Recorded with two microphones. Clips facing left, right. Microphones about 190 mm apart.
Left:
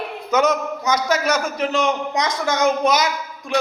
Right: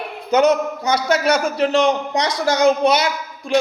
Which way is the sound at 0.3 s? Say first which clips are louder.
Right 4 dB; 30° right (ahead or behind).